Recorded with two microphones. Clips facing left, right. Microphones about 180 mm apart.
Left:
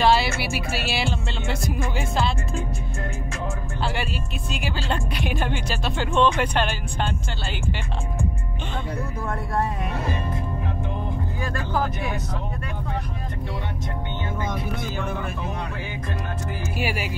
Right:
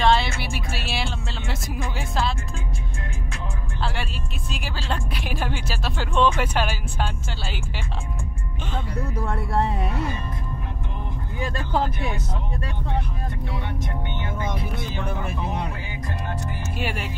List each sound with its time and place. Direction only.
0.0 s speech: 5° left (ahead or behind)
3.8 s music: centre (ahead or behind)
11.4 s speech: 25° right (ahead or behind)
16.7 s music: 10° left (ahead or behind)